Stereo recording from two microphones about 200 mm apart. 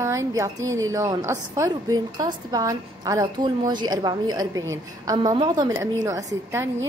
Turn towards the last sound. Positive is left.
turn(degrees=-15)  # may be behind; listen again after turning